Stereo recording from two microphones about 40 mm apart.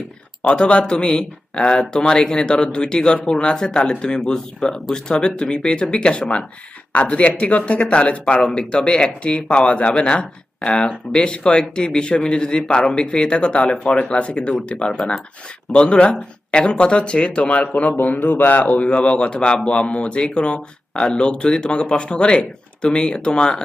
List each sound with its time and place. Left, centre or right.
0.4 s speech: left
8.2 s speech: left